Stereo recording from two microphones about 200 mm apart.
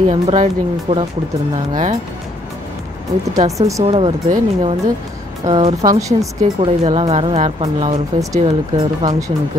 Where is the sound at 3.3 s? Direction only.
15° right (ahead or behind).